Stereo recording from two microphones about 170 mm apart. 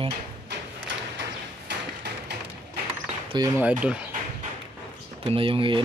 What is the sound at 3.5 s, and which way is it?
Speech, 10° right (ahead or behind).